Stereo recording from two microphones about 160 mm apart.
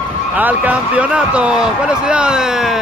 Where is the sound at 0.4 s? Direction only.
10° right (ahead or behind).